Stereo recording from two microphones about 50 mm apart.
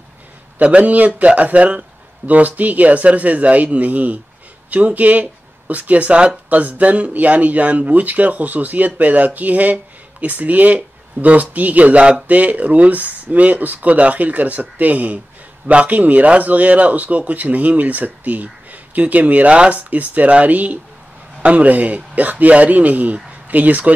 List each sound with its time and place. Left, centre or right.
0.6 s speech: right